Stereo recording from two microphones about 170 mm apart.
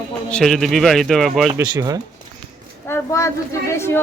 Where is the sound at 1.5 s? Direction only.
20° right (ahead or behind).